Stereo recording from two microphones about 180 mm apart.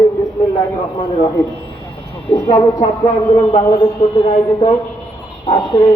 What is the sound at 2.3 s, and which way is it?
Speech, 25° left (ahead or behind).